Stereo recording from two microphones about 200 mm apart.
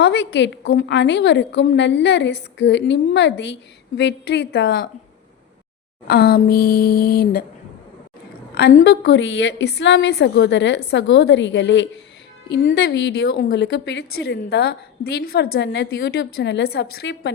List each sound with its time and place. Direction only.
0.0 s a woman's voice: 55° left (ahead or behind)
6.1 s a sound: 50° left (ahead or behind)
8.5 s a woman's voice: 55° left (ahead or behind)